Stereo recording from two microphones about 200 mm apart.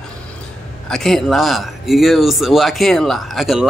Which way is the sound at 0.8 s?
Centre (ahead or behind).